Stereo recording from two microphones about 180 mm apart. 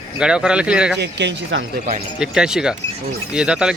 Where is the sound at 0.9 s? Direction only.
75° right (ahead or behind).